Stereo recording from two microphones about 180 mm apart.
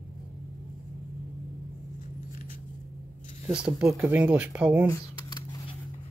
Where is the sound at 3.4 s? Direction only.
5° right (ahead or behind).